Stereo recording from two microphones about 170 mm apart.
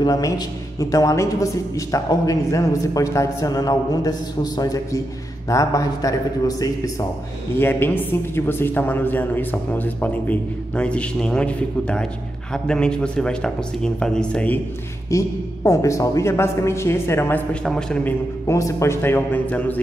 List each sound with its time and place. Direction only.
0.0 s a man's voice: 20° left (ahead or behind)
15.0 s a man's voice: 20° left (ahead or behind)
18.5 s a man's voice: 15° left (ahead or behind)